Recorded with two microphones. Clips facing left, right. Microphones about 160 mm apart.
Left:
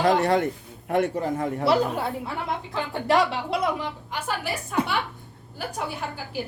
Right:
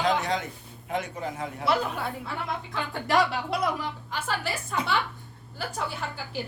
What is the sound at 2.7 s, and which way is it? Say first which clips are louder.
Speech: left 3 dB; 25° left (ahead or behind).